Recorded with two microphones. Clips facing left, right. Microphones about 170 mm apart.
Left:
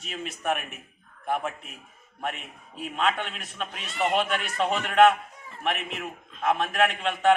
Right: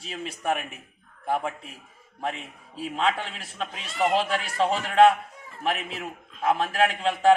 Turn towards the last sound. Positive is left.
turn(degrees=-30)  # may be behind; listen again after turning